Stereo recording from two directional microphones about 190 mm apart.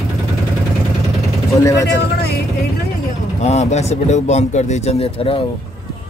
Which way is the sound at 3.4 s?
35° left (ahead or behind).